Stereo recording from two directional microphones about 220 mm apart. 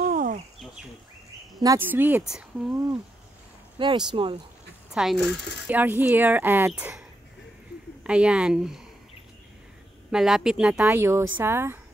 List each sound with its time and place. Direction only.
0.0 s a sound: 35° right (ahead or behind)
1.6 s speech: 15° right (ahead or behind)
2.7 s speech: 15° right (ahead or behind)
4.9 s speech: centre (ahead or behind)
8.0 s speech: 5° right (ahead or behind)
10.1 s speech: centre (ahead or behind)